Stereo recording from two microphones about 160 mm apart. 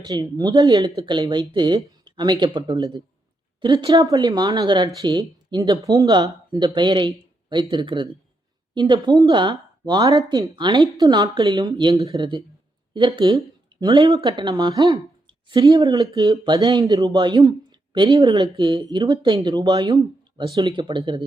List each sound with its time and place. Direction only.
0.0 s speech: 25° right (ahead or behind)
14.2 s speech: 35° right (ahead or behind)